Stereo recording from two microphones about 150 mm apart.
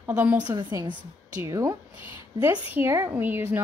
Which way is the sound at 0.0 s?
10° right (ahead or behind).